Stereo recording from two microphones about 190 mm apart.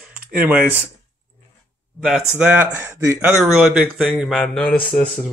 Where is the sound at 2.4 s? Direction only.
10° right (ahead or behind).